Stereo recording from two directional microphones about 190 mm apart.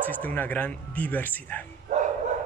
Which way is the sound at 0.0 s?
10° left (ahead or behind).